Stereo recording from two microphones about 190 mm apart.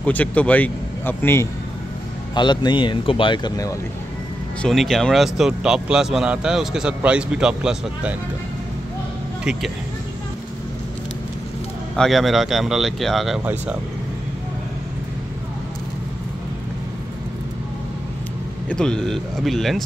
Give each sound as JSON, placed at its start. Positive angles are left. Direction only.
{"t": 0.0, "sound": "speech", "side_deg": 5}
{"t": 2.3, "sound": "speech", "side_deg": 25}
{"t": 4.6, "sound": "speech", "side_deg": 0}
{"t": 9.4, "sound": "speech", "side_deg": -5}
{"t": 11.9, "sound": "speech", "side_deg": 0}
{"t": 18.7, "sound": "speech", "side_deg": 5}